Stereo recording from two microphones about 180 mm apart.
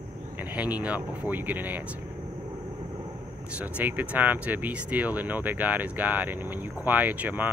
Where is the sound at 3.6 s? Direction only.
10° right (ahead or behind).